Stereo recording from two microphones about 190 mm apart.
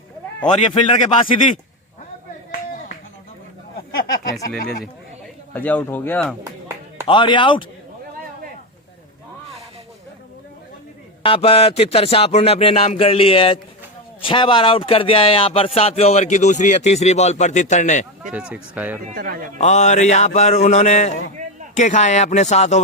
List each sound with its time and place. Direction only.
0.6 s a man's voice: 30° left (ahead or behind)
5.5 s speech: 10° left (ahead or behind)
7.1 s a man's voice: 25° left (ahead or behind)
11.2 s speech: 30° left (ahead or behind)
18.2 s speech: 5° right (ahead or behind)
19.0 s speech: 50° right (ahead or behind)
19.5 s speech: 35° left (ahead or behind)